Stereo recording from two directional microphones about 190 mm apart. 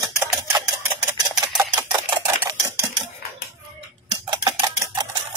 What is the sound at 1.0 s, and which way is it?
Typewriter, 20° right (ahead or behind).